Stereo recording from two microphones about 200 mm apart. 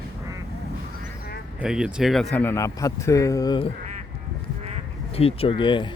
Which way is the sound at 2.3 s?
10° left (ahead or behind).